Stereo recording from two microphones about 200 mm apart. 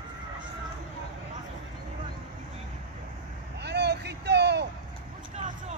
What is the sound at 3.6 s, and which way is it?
Vehicle, 55° right (ahead or behind).